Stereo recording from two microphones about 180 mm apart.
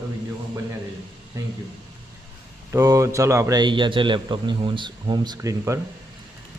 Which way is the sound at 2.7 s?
15° right (ahead or behind).